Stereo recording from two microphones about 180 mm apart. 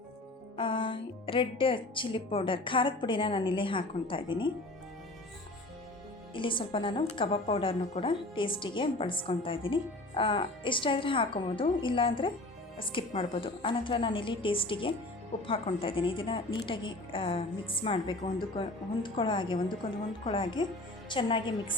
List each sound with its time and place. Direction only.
0.5 s a woman's voice: 25° left (ahead or behind)
6.3 s a woman's voice: 30° left (ahead or behind)